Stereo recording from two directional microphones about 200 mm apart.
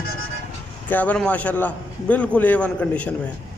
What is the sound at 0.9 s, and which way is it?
A man's voice, 5° left (ahead or behind).